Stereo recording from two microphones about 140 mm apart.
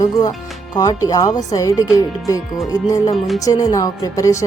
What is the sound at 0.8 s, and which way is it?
Speech, 25° left (ahead or behind).